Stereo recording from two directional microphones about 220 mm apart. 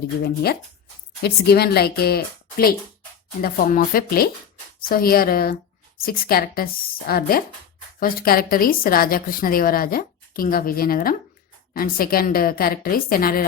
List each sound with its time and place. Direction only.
1.2 s a woman's voice: 45° left (ahead or behind)